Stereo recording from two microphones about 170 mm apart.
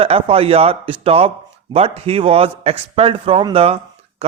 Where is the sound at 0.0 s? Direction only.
35° right (ahead or behind).